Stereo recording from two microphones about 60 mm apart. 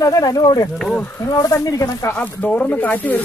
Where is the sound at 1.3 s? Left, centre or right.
Left.